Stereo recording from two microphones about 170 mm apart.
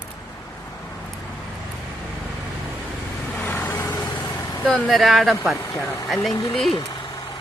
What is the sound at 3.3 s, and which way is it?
Vehicle, 10° left (ahead or behind).